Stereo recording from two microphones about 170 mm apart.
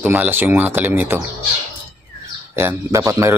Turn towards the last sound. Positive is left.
turn(degrees=-15)  # may be behind; listen again after turning